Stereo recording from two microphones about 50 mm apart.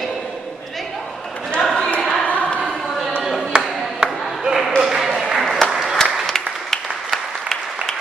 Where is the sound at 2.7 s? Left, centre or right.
Centre.